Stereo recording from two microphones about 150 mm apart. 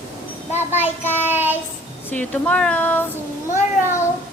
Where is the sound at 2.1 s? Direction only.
10° left (ahead or behind).